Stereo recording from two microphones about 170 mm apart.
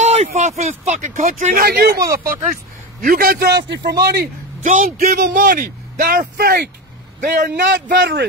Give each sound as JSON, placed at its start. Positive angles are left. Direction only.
{"t": 0.0, "sound": "a man's voice", "side_deg": -40}
{"t": 4.6, "sound": "a man's voice", "side_deg": -55}